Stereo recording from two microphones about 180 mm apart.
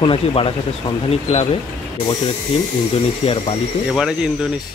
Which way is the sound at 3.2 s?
35° left (ahead or behind).